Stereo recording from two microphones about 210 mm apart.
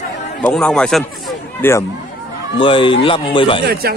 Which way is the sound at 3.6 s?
50° right (ahead or behind).